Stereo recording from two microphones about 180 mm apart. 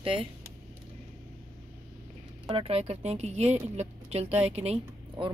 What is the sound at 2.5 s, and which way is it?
A woman's voice, 35° right (ahead or behind).